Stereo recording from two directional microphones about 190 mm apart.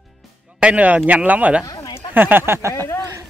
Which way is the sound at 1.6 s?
20° left (ahead or behind).